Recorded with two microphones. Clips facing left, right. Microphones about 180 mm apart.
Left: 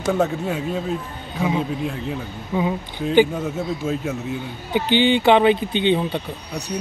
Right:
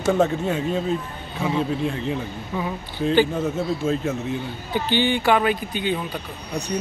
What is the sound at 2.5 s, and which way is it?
Speech, 15° left (ahead or behind).